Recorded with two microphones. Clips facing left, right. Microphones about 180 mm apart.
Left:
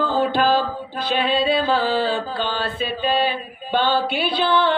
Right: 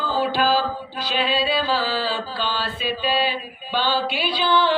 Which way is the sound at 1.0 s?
50° left (ahead or behind).